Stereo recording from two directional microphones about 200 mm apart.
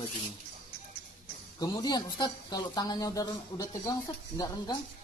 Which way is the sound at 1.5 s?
20° left (ahead or behind).